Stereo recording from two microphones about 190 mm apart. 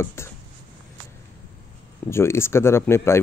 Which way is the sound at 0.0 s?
15° left (ahead or behind).